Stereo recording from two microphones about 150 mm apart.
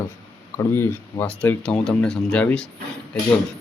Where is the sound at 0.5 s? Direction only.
15° left (ahead or behind).